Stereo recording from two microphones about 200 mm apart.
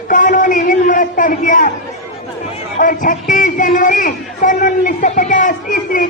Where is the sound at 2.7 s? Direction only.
40° left (ahead or behind).